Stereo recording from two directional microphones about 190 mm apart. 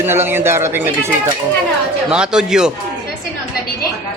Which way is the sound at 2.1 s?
5° right (ahead or behind).